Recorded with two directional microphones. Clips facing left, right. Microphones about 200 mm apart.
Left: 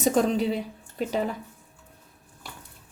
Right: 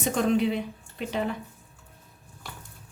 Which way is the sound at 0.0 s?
40° left (ahead or behind).